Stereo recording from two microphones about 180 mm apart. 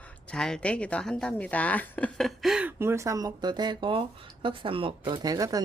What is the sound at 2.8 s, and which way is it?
Speech, 15° right (ahead or behind).